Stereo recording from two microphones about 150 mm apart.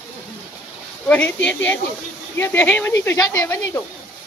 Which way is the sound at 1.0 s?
10° left (ahead or behind).